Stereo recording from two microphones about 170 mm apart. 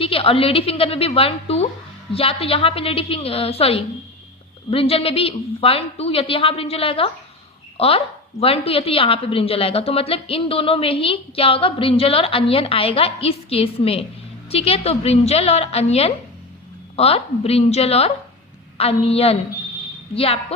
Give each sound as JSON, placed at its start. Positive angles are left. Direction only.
{"t": 0.0, "sound": "a woman's voice", "side_deg": 35}